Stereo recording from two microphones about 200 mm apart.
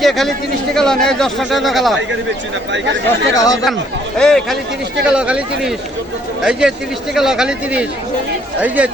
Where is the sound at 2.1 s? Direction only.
65° right (ahead or behind).